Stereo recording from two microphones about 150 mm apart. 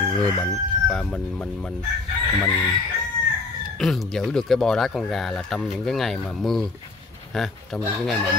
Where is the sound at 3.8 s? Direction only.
Centre (ahead or behind).